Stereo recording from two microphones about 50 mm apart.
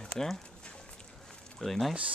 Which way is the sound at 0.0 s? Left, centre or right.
Centre.